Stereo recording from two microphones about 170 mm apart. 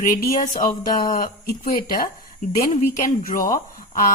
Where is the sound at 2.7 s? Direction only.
50° left (ahead or behind).